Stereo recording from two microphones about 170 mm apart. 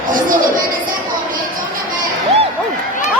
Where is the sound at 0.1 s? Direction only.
50° right (ahead or behind).